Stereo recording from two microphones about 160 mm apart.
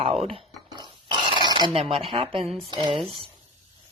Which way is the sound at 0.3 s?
25° right (ahead or behind).